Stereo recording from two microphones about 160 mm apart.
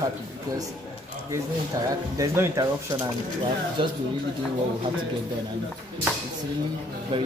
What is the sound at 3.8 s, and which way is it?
Speech, 30° right (ahead or behind).